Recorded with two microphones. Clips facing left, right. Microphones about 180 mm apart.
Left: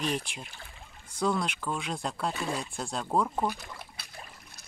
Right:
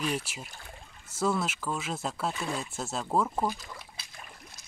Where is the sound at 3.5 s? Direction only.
60° left (ahead or behind).